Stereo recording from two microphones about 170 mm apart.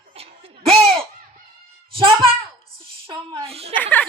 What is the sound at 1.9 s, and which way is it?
A child's voice, 30° right (ahead or behind).